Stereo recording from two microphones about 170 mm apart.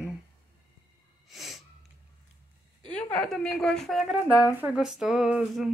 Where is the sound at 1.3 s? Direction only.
Centre (ahead or behind).